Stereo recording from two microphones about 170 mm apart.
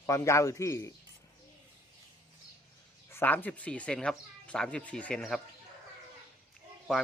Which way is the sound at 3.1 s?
10° left (ahead or behind).